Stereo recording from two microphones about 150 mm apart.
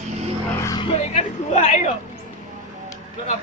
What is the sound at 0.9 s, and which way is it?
Speech, 50° left (ahead or behind).